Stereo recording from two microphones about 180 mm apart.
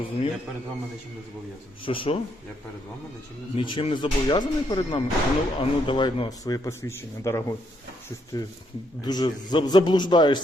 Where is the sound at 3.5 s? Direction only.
30° left (ahead or behind).